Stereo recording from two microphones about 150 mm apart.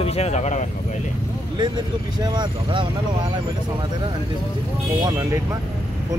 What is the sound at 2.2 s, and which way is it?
Speech, 30° right (ahead or behind).